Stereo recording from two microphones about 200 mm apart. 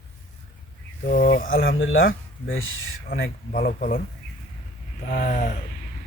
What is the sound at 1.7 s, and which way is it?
Speech, 75° left (ahead or behind).